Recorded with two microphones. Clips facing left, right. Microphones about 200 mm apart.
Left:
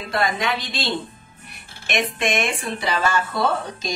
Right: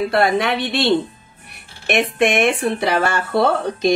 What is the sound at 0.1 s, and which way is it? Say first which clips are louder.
Speech: right 6 dB; 65° right (ahead or behind).